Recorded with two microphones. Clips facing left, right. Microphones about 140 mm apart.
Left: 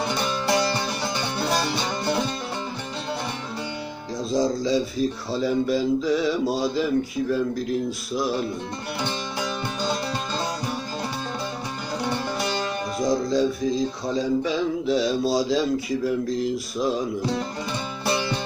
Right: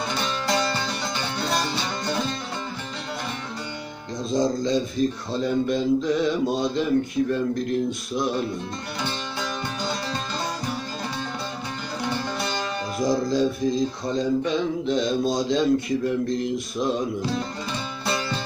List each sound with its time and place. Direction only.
0.1 s music: 15° left (ahead or behind)
4.2 s speech: centre (ahead or behind)
9.0 s music: 15° left (ahead or behind)
13.0 s speech: centre (ahead or behind)
17.3 s music: 15° left (ahead or behind)